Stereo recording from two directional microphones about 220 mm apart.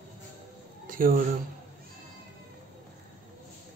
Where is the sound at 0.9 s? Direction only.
40° right (ahead or behind).